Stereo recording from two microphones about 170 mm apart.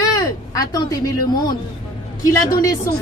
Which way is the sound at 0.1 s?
20° left (ahead or behind).